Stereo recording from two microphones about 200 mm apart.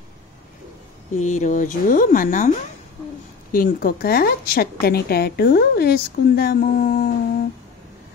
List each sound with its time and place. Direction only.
1.1 s speech: 35° left (ahead or behind)
3.5 s a woman's voice: 50° left (ahead or behind)